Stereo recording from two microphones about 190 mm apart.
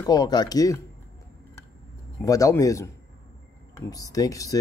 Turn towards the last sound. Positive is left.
turn(degrees=15)  # may be behind; listen again after turning